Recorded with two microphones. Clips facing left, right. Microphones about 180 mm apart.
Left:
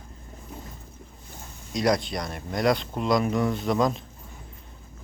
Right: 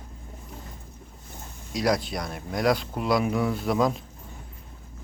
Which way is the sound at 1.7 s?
Centre (ahead or behind).